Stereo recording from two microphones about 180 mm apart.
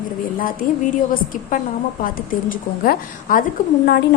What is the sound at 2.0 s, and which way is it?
A woman's voice, 50° left (ahead or behind).